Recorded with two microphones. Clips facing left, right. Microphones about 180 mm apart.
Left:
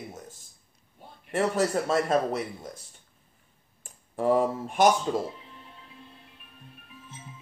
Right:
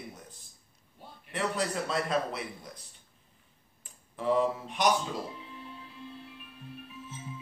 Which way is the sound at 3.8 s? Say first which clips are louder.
Left 8 dB; 45° left (ahead or behind).